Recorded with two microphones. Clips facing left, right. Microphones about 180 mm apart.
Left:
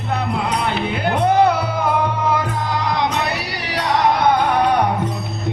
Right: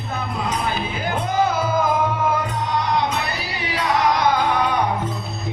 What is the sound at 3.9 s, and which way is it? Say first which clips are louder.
Music: left 3 dB; 60° left (ahead or behind).